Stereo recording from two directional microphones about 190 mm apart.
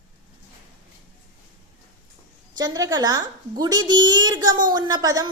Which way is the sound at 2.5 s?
20° right (ahead or behind).